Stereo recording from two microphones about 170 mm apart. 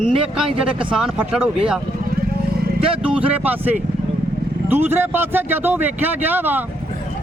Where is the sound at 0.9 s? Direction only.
5° right (ahead or behind).